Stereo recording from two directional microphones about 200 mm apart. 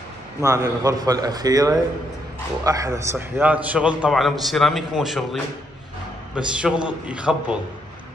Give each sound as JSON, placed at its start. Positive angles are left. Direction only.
{"t": 0.4, "sound": "a man's voice", "side_deg": -15}